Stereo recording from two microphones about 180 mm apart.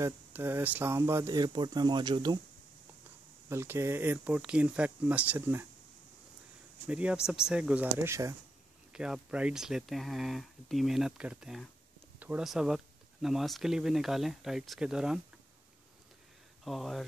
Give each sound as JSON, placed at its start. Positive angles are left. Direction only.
{"t": 0.0, "sound": "speech", "side_deg": -10}
{"t": 3.4, "sound": "speech", "side_deg": -15}
{"t": 6.9, "sound": "speech", "side_deg": -5}
{"t": 8.9, "sound": "speech", "side_deg": -5}
{"t": 16.6, "sound": "speech", "side_deg": 0}